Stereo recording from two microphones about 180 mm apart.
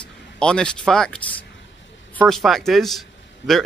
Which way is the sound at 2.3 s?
Centre (ahead or behind).